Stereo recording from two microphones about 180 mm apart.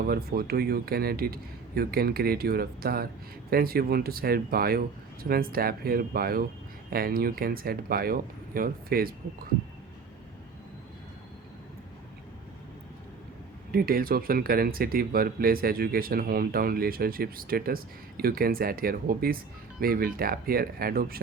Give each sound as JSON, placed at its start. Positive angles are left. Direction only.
{"t": 0.1, "sound": "speech", "side_deg": -60}
{"t": 13.7, "sound": "speech", "side_deg": -55}